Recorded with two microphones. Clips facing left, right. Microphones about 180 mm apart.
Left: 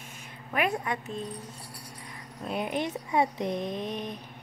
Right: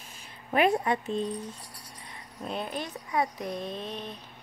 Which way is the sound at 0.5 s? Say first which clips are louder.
Right 5 dB; 30° right (ahead or behind).